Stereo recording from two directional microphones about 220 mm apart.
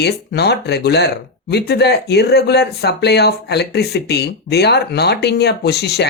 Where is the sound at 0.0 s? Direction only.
50° left (ahead or behind).